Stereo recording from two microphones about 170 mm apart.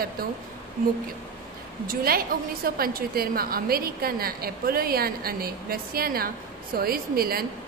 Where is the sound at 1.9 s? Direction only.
60° right (ahead or behind).